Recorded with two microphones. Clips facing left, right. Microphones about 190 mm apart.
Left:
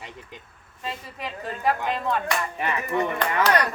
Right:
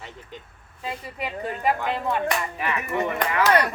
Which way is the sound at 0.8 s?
10° right (ahead or behind).